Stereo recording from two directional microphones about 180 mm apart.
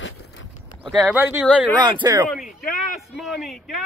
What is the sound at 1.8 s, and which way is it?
Speech, 25° right (ahead or behind).